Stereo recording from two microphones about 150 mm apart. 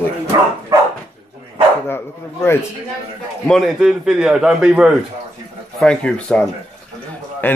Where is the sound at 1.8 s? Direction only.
15° left (ahead or behind).